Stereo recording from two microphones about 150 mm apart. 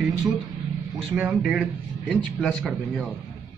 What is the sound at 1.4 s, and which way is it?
Speech, centre (ahead or behind).